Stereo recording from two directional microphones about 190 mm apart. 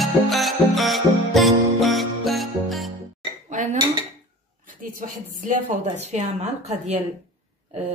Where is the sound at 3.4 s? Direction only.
40° right (ahead or behind).